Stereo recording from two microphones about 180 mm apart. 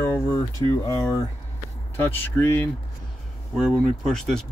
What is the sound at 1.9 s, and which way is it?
Speech, 10° left (ahead or behind).